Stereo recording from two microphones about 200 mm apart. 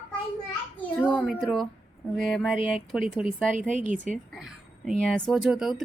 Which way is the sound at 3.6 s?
40° right (ahead or behind).